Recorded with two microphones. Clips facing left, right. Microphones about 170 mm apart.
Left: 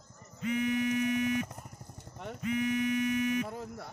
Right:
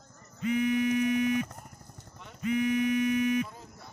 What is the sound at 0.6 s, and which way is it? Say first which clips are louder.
Music: right 3 dB; 15° right (ahead or behind).